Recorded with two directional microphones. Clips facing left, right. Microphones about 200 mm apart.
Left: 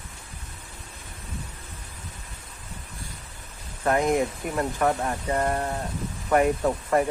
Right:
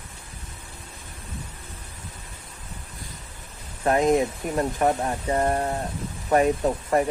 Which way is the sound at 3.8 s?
20° right (ahead or behind).